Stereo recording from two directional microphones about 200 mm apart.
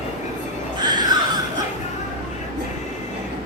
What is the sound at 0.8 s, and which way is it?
Music, 20° right (ahead or behind).